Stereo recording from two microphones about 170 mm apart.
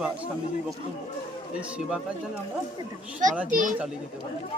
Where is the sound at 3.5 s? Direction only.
50° right (ahead or behind).